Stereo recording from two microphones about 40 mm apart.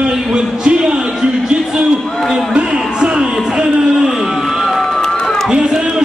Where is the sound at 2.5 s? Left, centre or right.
Right.